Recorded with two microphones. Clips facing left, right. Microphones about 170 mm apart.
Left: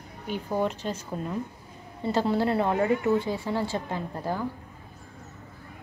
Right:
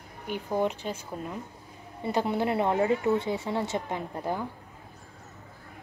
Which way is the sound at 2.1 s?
20° right (ahead or behind).